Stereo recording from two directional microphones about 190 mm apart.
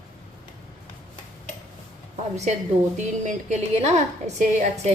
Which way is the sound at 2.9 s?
40° right (ahead or behind).